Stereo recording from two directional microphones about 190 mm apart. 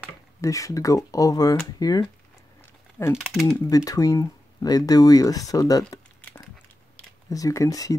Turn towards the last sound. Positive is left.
turn(degrees=20)  # may be behind; listen again after turning